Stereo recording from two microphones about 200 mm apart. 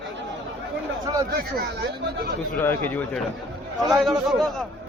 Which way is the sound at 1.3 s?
55° right (ahead or behind).